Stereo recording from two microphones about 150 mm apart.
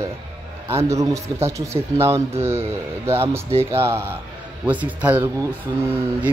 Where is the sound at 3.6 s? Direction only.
20° right (ahead or behind).